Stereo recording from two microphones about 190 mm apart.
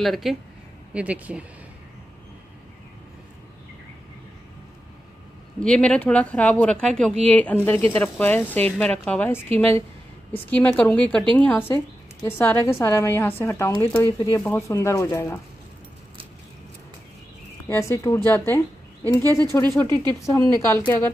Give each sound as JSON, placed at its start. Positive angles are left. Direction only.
{"t": 0.0, "sound": "speech", "side_deg": 0}
{"t": 5.6, "sound": "speech", "side_deg": 5}
{"t": 17.6, "sound": "speech", "side_deg": 15}
{"t": 19.7, "sound": "speech", "side_deg": 10}